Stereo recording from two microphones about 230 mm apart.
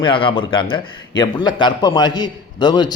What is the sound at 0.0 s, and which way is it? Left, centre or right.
A man's voice, left.